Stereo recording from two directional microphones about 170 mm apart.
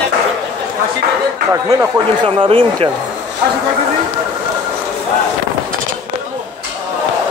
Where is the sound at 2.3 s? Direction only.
30° right (ahead or behind).